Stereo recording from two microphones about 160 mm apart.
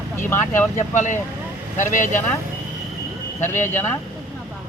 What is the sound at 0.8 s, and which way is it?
Speech, 50° left (ahead or behind).